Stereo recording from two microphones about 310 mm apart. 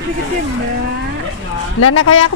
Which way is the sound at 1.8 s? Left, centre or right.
Left.